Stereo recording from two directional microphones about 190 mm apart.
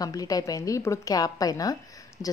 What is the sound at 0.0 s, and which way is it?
A woman's voice, 20° left (ahead or behind).